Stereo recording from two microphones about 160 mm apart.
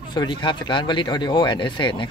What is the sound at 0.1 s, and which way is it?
Speech, 30° left (ahead or behind).